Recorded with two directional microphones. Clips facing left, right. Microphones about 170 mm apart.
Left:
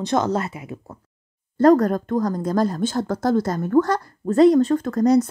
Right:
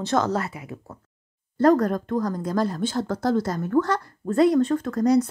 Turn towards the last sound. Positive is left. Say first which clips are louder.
# left 3 dB
turn(degrees=45)  # may be behind; listen again after turning